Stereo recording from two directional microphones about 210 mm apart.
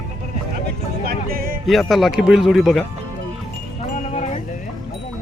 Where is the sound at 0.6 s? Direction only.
45° right (ahead or behind).